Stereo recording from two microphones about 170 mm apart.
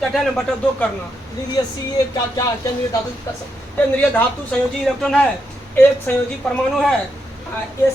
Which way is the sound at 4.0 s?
10° left (ahead or behind).